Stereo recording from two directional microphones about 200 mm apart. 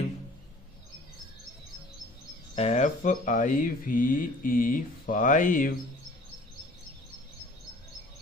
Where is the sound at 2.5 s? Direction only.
30° left (ahead or behind).